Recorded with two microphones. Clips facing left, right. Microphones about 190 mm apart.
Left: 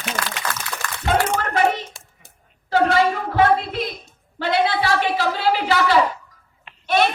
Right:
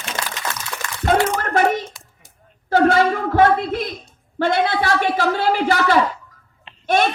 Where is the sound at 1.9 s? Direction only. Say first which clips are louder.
Left 1 dB; 25° left (ahead or behind).